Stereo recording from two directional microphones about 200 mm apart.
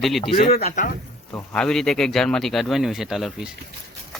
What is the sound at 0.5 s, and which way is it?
Speech, 50° left (ahead or behind).